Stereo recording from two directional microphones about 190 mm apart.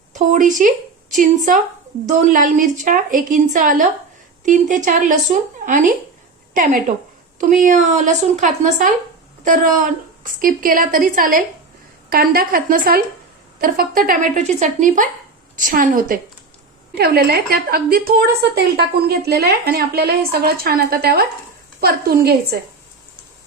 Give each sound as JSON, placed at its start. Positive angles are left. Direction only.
{"t": 0.1, "sound": "speech", "side_deg": -40}
{"t": 2.0, "sound": "a woman's voice", "side_deg": -40}